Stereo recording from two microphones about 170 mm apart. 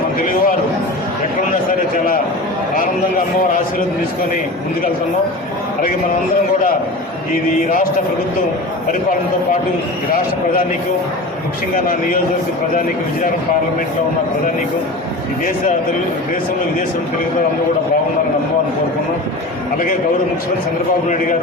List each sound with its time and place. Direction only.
0.2 s speech: 55° left (ahead or behind)